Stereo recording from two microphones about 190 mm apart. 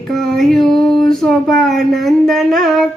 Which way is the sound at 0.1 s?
Centre (ahead or behind).